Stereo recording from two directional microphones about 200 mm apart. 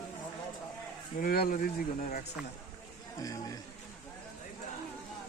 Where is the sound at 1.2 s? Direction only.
45° left (ahead or behind).